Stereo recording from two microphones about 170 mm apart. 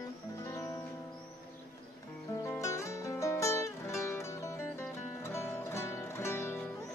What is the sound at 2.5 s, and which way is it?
Music, 15° left (ahead or behind).